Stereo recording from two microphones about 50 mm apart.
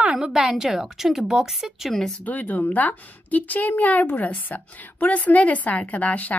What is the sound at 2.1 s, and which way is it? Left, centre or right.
A woman's voice, left.